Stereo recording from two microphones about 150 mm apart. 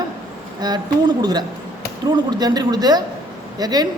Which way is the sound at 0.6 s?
30° right (ahead or behind).